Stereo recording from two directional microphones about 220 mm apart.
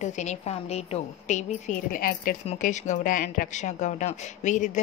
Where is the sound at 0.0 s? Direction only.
30° left (ahead or behind).